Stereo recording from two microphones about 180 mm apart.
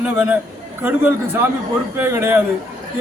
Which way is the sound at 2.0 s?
15° right (ahead or behind).